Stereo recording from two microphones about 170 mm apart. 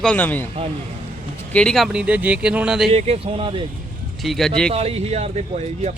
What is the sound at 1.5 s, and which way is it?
Speech, centre (ahead or behind).